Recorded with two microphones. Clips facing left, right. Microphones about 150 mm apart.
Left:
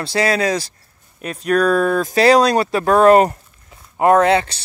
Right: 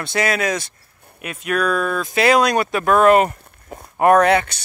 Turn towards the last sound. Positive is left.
turn(degrees=30)  # may be behind; listen again after turning